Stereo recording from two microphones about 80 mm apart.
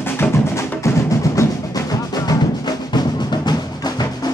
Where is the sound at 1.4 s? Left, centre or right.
Left.